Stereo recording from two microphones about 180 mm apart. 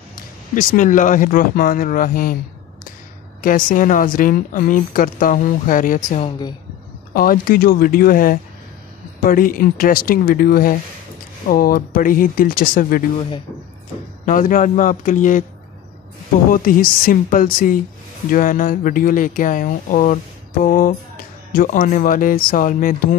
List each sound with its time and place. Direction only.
0.6 s speech: 45° left (ahead or behind)
3.4 s speech: 50° left (ahead or behind)
14.2 s speech: 50° left (ahead or behind)
16.4 s speech: 50° left (ahead or behind)